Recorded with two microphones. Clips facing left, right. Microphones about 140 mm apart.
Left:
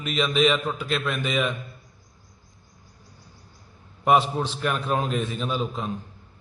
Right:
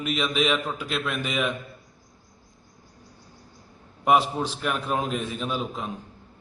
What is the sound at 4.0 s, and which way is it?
A man's voice, 5° right (ahead or behind).